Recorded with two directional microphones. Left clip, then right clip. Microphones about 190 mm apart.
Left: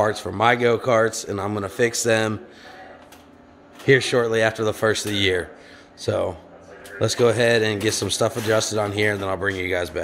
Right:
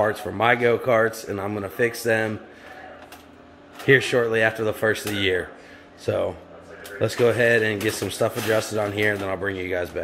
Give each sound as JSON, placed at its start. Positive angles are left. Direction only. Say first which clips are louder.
{"t": 0.0, "sound": "speech", "louder": "left 2 dB", "side_deg": 15}
{"t": 3.8, "sound": "speech", "louder": "even", "side_deg": 15}